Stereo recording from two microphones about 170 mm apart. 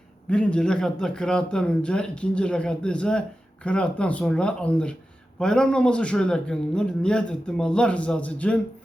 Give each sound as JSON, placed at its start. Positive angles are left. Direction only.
{"t": 0.3, "sound": "a man's voice", "side_deg": 5}